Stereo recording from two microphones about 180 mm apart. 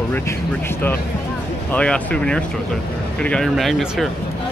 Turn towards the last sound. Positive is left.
turn(degrees=0)  # may be behind; listen again after turning